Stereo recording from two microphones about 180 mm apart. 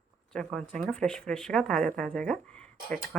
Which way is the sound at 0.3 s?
5° left (ahead or behind).